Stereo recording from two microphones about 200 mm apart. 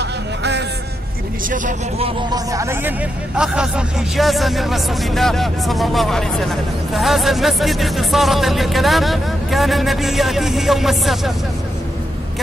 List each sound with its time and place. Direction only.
0.0 s music: 60° right (ahead or behind)
1.5 s speech: 35° right (ahead or behind)
2.3 s speech: 15° right (ahead or behind)